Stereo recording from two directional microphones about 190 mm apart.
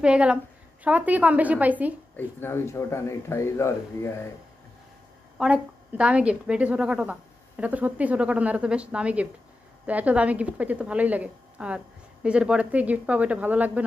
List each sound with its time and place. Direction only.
0.0 s a woman's voice: 5° right (ahead or behind)
2.1 s speech: 10° left (ahead or behind)
5.4 s a woman's voice: 5° right (ahead or behind)